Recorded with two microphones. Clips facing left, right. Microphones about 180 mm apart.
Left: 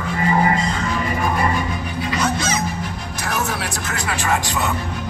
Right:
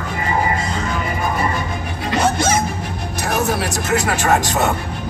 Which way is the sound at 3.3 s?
40° right (ahead or behind).